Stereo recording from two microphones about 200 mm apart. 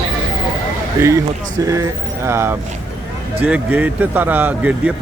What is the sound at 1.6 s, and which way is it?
Speech, 15° right (ahead or behind).